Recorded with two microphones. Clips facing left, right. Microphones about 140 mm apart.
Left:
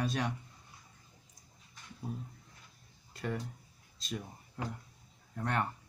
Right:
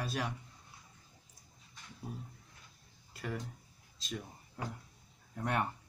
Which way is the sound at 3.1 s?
Centre (ahead or behind).